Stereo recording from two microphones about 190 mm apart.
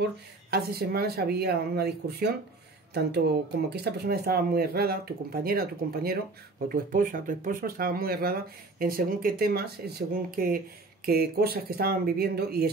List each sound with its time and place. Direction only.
0.5 s speech: 55° right (ahead or behind)